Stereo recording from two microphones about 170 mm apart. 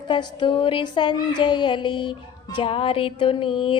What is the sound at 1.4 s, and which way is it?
Speech, 25° left (ahead or behind).